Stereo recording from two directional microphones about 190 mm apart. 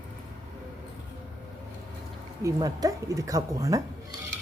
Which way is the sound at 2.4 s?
20° right (ahead or behind).